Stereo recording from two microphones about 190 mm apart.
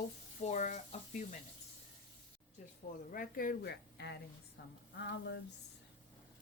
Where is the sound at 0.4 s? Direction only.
40° left (ahead or behind).